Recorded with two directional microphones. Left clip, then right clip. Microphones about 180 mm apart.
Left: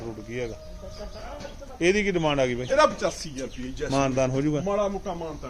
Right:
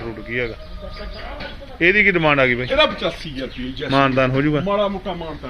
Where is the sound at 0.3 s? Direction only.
20° left (ahead or behind).